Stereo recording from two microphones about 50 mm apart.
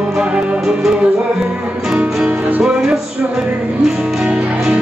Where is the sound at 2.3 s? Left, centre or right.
Right.